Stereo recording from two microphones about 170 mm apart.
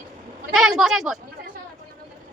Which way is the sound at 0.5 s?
Centre (ahead or behind).